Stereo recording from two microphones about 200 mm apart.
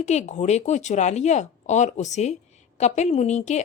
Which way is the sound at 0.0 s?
35° left (ahead or behind).